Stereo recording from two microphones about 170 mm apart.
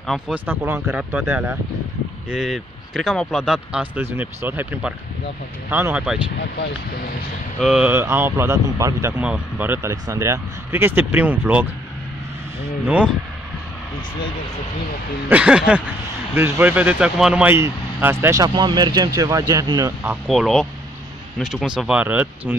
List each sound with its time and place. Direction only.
0.3 s speech: 10° right (ahead or behind)
7.6 s speech: 5° right (ahead or behind)
12.8 s speech: 5° right (ahead or behind)
15.2 s speech: 5° right (ahead or behind); by 19.9 s 20° right (ahead or behind)
20.2 s speech: centre (ahead or behind)